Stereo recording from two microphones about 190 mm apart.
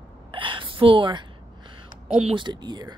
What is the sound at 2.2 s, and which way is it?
Speech, 25° right (ahead or behind).